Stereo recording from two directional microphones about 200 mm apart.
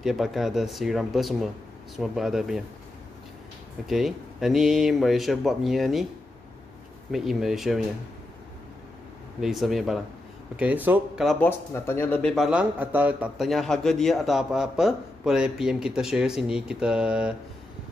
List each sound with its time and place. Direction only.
0.0 s speech: centre (ahead or behind)
3.8 s speech: centre (ahead or behind)
7.1 s speech: centre (ahead or behind)
9.4 s speech: centre (ahead or behind)